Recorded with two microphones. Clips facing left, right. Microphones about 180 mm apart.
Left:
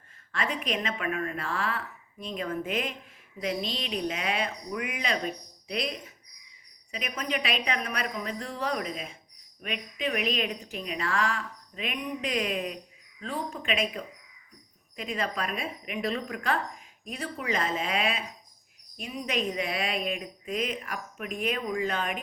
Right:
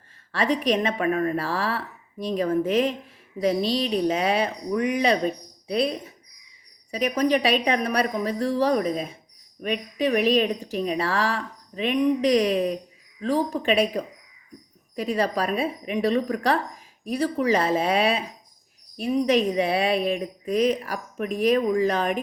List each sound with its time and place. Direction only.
0.8 s speech: 35° right (ahead or behind)
6.9 s speech: 35° right (ahead or behind)
10.1 s speech: 35° right (ahead or behind)
18.9 s speech: 35° right (ahead or behind)